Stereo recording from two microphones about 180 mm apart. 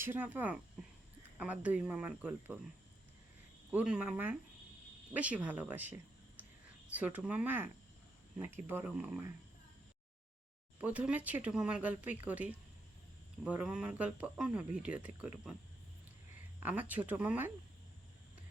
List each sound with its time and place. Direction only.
0.0 s speech: 10° right (ahead or behind)
3.7 s speech: 5° right (ahead or behind)
10.8 s speech: 10° right (ahead or behind)
16.6 s speech: 10° right (ahead or behind)